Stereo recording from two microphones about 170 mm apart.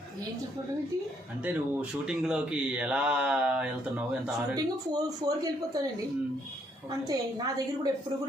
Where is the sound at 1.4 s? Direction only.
10° right (ahead or behind).